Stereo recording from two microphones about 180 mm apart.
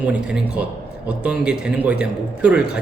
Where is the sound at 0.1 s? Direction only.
5° right (ahead or behind).